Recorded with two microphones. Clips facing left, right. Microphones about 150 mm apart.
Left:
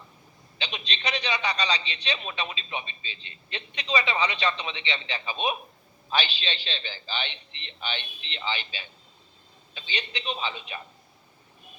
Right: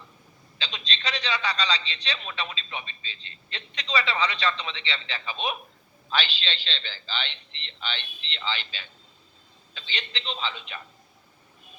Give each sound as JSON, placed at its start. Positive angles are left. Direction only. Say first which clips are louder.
{"t": 0.6, "sound": "a man's voice", "louder": "left 1 dB", "side_deg": 15}